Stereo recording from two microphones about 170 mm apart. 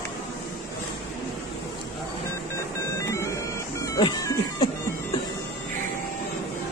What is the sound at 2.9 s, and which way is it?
Music, 15° left (ahead or behind).